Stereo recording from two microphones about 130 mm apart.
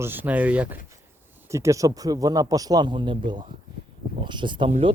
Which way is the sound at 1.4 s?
20° right (ahead or behind).